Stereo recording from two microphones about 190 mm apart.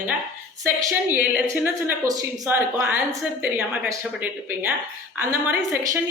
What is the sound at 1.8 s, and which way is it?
Speech, 15° right (ahead or behind).